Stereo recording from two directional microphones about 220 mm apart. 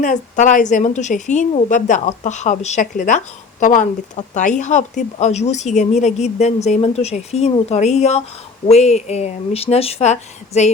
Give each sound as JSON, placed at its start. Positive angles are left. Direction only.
{"t": 0.0, "sound": "a woman's voice", "side_deg": 35}